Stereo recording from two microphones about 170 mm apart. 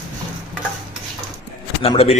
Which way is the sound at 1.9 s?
35° left (ahead or behind).